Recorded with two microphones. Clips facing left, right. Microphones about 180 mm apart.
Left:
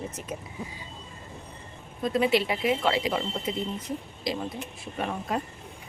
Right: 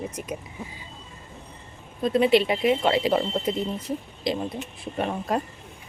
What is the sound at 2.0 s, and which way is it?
Speech, 25° right (ahead or behind).